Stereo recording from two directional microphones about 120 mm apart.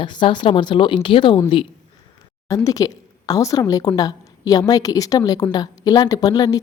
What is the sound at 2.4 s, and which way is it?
A woman's voice, 30° left (ahead or behind).